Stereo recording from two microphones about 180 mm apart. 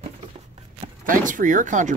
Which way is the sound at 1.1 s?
45° right (ahead or behind).